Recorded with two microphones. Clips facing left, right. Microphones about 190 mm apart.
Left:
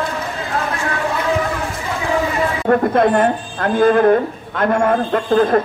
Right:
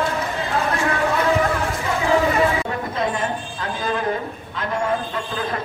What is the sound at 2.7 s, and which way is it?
Speech, 60° left (ahead or behind).